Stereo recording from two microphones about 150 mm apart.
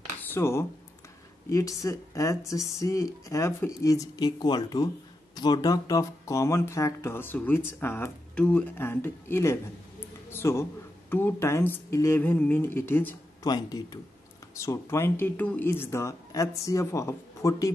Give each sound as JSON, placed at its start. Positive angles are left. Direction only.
{"t": 0.2, "sound": "speech", "side_deg": 15}
{"t": 13.4, "sound": "speech", "side_deg": 25}